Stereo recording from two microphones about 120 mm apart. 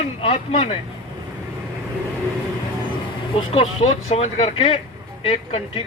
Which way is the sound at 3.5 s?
70° left (ahead or behind).